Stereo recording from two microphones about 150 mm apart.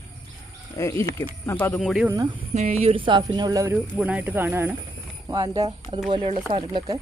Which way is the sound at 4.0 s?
10° right (ahead or behind).